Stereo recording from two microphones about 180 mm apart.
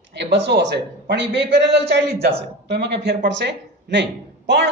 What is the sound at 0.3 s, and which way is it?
A woman's voice, 70° right (ahead or behind).